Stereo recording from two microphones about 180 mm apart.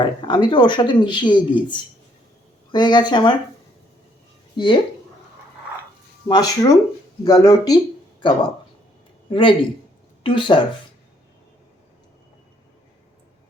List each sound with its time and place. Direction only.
0.0 s speech: 25° left (ahead or behind)
4.5 s speech: 25° left (ahead or behind)
6.2 s speech: 20° left (ahead or behind)